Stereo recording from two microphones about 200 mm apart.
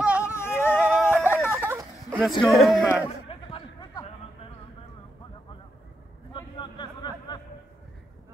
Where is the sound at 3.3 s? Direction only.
25° left (ahead or behind).